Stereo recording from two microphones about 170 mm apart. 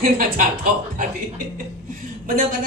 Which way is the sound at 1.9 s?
55° right (ahead or behind).